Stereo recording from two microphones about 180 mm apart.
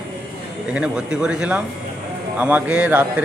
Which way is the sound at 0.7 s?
5° right (ahead or behind).